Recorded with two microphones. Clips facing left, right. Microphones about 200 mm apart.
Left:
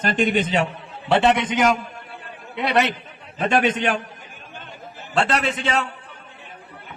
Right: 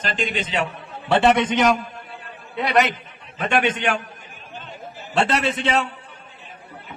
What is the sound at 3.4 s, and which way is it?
Speech, 40° left (ahead or behind).